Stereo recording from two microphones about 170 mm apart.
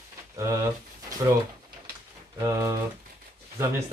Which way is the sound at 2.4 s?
15° right (ahead or behind).